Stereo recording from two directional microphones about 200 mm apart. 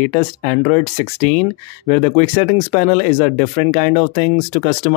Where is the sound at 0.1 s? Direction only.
35° left (ahead or behind).